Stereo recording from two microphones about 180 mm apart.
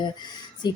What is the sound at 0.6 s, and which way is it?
Speech, 25° left (ahead or behind).